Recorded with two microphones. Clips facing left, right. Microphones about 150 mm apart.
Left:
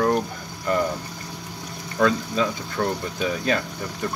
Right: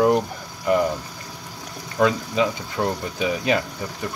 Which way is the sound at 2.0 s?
15° right (ahead or behind).